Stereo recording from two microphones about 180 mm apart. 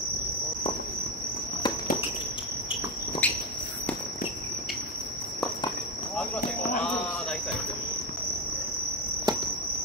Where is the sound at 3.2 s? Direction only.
10° left (ahead or behind).